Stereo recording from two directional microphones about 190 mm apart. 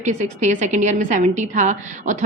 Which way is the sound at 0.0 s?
40° right (ahead or behind).